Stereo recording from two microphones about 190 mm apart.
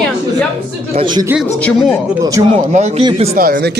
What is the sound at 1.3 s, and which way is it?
Speech, 5° left (ahead or behind).